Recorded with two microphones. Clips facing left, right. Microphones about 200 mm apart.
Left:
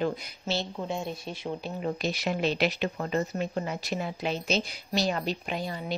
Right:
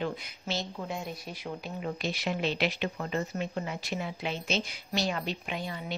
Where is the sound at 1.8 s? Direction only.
40° left (ahead or behind).